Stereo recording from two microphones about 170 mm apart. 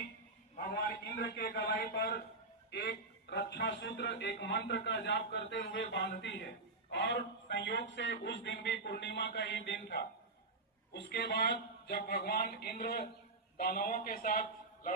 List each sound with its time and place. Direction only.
0.5 s a sound: 60° left (ahead or behind)
2.6 s a man's voice: 75° left (ahead or behind)
10.9 s a man's voice: 70° left (ahead or behind); by 14.4 s 55° left (ahead or behind)